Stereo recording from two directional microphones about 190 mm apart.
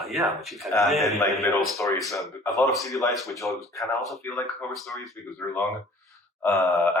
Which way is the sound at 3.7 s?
Centre (ahead or behind).